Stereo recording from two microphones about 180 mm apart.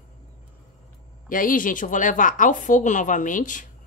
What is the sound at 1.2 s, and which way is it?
Speech, 50° left (ahead or behind).